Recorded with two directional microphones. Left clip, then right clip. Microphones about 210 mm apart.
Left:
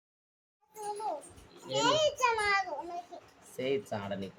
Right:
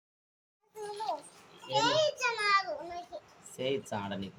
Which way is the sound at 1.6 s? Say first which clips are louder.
Even; 20° left (ahead or behind).